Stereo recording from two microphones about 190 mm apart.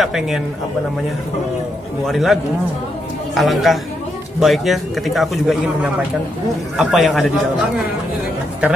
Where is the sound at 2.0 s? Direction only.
Centre (ahead or behind).